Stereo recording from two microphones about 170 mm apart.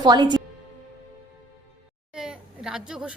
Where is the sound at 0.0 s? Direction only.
25° right (ahead or behind).